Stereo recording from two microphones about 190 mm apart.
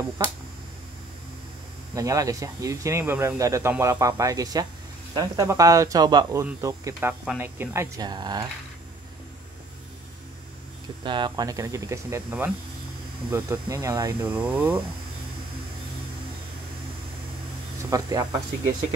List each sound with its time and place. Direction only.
0.2 s speech: 20° right (ahead or behind)
2.0 s speech: 20° right (ahead or behind)
11.1 s speech: 25° right (ahead or behind)
14.3 s speech: 5° right (ahead or behind)
17.8 s speech: 20° right (ahead or behind)